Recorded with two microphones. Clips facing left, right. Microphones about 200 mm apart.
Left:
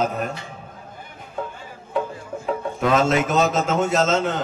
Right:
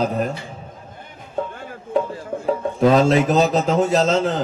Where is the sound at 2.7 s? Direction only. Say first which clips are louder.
Right 5 dB; 35° right (ahead or behind).